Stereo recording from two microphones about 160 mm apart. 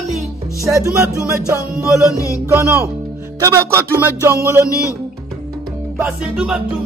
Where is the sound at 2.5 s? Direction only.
15° right (ahead or behind).